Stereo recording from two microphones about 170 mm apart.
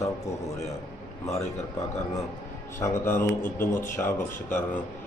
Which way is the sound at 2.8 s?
15° left (ahead or behind).